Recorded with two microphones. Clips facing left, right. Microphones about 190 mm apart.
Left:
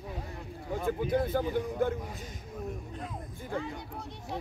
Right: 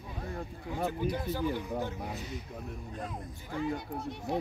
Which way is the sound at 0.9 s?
50° left (ahead or behind).